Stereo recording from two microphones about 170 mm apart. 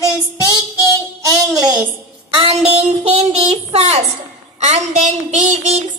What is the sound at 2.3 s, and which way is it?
A child's voice, 35° right (ahead or behind).